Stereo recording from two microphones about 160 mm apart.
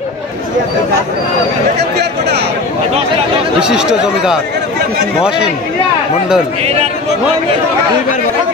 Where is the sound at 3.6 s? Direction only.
5° right (ahead or behind).